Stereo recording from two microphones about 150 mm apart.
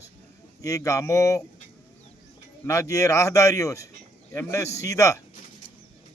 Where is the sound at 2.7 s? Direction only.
20° left (ahead or behind).